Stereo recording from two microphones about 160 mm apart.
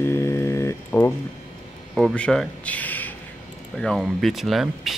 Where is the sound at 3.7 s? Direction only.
5° left (ahead or behind).